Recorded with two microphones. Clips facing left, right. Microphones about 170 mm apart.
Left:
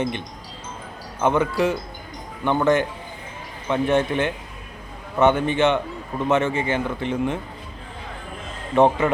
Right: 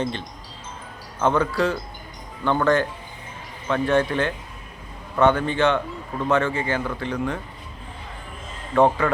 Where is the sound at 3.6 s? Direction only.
20° left (ahead or behind).